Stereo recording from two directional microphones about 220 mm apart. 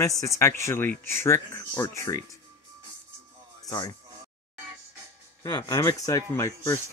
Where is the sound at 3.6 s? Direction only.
15° left (ahead or behind).